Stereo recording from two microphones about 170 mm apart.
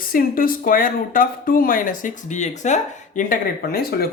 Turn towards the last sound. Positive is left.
turn(degrees=60)  # may be behind; listen again after turning